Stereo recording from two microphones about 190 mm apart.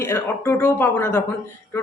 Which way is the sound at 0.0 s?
15° left (ahead or behind).